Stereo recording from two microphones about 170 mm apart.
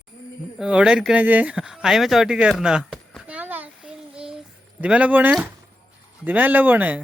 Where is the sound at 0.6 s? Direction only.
5° right (ahead or behind).